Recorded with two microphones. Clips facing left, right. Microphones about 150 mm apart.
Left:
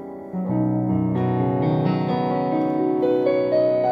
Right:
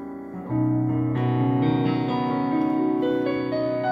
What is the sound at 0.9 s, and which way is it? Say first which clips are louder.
Music: left 2 dB; 25° left (ahead or behind).